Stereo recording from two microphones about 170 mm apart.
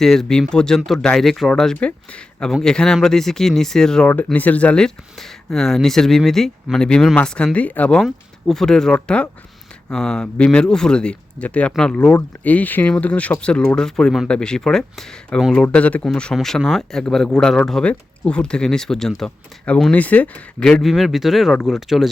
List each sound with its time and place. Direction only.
0.0 s speech: centre (ahead or behind)